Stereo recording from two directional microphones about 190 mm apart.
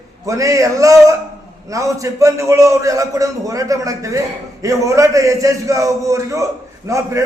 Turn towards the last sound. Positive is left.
turn(degrees=-15)  # may be behind; listen again after turning